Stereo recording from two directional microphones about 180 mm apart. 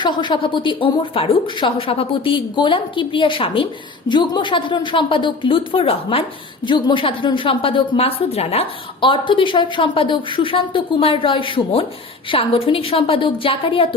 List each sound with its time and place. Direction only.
0.0 s a woman's voice: 25° left (ahead or behind)